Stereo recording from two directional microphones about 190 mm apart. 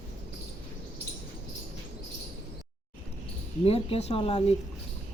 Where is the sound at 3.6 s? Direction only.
30° left (ahead or behind).